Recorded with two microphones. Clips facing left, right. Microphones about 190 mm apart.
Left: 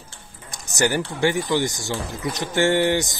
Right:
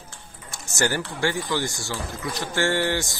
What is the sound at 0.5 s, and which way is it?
Speech, 15° left (ahead or behind).